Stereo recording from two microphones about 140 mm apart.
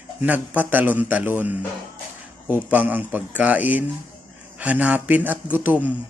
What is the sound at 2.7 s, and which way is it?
Speech, 10° right (ahead or behind).